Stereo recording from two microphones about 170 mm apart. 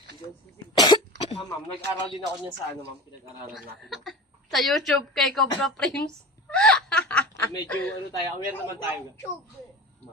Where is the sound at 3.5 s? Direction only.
Centre (ahead or behind).